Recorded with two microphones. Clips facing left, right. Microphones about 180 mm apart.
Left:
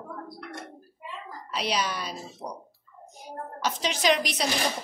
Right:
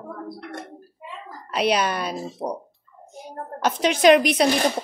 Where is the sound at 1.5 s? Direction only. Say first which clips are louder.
Right 8 dB; 60° right (ahead or behind).